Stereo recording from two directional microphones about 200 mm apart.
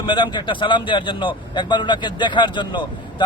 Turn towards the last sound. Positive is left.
turn(degrees=20)  # may be behind; listen again after turning